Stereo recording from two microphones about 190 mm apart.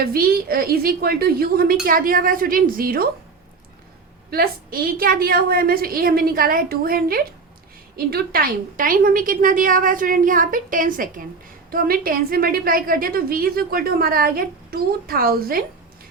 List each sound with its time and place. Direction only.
0.0 s a woman's voice: 50° right (ahead or behind)
4.3 s a woman's voice: 50° right (ahead or behind)